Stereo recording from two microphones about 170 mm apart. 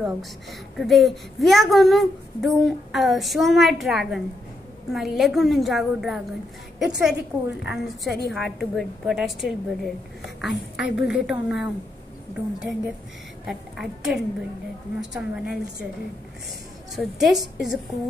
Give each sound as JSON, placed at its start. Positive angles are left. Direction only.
{"t": 0.0, "sound": "a child's voice", "side_deg": 0}
{"t": 13.5, "sound": "a child's voice", "side_deg": 0}
{"t": 16.9, "sound": "a child's voice", "side_deg": 0}